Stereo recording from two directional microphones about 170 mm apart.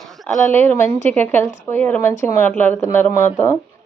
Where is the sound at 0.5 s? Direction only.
10° left (ahead or behind).